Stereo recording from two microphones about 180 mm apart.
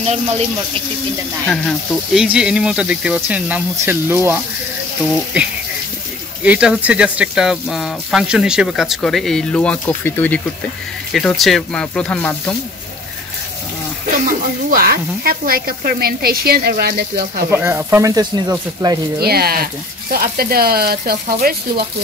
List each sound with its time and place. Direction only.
1.4 s speech: centre (ahead or behind)
14.2 s speech: 55° right (ahead or behind)
17.5 s speech: 10° right (ahead or behind)
19.1 s speech: 60° right (ahead or behind)